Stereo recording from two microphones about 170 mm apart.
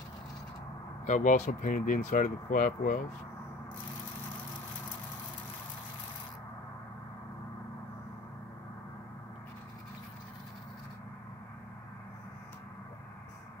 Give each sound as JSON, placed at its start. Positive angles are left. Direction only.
{"t": 1.0, "sound": "speech", "side_deg": 45}